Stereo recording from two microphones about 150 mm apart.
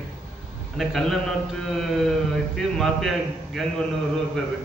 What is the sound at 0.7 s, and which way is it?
Speech, centre (ahead or behind).